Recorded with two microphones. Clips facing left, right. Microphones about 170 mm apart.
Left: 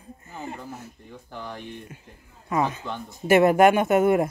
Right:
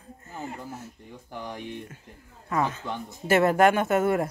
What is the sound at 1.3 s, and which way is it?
Speech, 15° right (ahead or behind).